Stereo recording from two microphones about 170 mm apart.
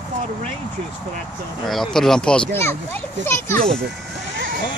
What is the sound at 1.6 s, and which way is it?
A child's voice, centre (ahead or behind).